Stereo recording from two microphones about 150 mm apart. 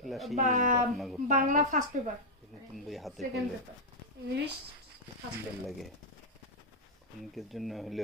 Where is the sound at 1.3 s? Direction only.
60° right (ahead or behind).